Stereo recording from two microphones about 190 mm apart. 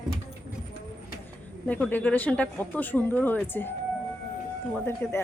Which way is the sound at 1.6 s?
10° left (ahead or behind).